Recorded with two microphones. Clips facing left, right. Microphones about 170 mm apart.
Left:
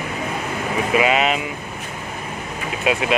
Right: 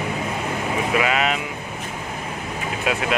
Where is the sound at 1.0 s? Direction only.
15° left (ahead or behind).